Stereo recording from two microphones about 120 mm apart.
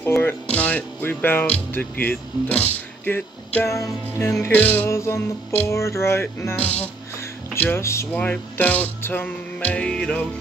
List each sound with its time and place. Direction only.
0.2 s speech: 15° left (ahead or behind)
3.6 s music: 25° left (ahead or behind)
8.1 s speech: 10° left (ahead or behind)